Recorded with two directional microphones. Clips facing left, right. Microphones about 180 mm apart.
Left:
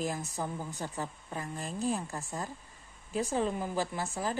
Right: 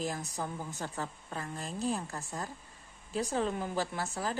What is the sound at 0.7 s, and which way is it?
A woman's voice, 15° left (ahead or behind).